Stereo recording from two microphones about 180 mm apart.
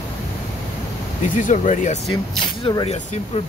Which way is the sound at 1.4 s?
45° left (ahead or behind).